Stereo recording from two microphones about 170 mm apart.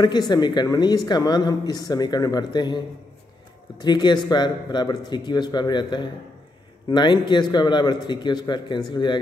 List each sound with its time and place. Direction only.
0.0 s speech: 25° left (ahead or behind)
3.8 s speech: 25° left (ahead or behind)